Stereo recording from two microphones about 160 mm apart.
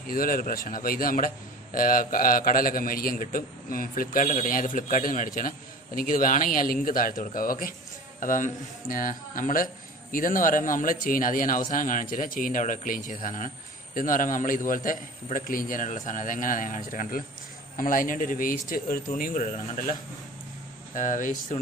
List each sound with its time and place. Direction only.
0.0 s a man's voice: 65° left (ahead or behind)